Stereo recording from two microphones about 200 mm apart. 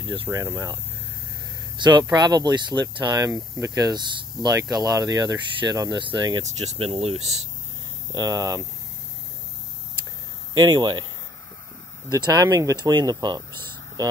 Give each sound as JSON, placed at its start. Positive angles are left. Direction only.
{"t": 0.0, "sound": "speech", "side_deg": -20}
{"t": 1.8, "sound": "speech", "side_deg": -20}
{"t": 8.1, "sound": "speech", "side_deg": -20}
{"t": 10.5, "sound": "speech", "side_deg": -20}
{"t": 12.1, "sound": "speech", "side_deg": -20}